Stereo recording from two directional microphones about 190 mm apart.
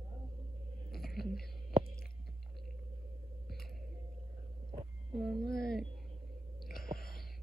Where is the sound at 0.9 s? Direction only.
55° left (ahead or behind).